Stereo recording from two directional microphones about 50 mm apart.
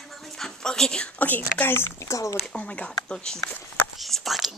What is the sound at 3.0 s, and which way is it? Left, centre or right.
Speech, centre.